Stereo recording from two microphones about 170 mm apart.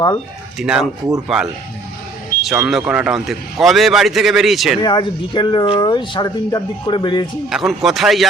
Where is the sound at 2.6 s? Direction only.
5° right (ahead or behind).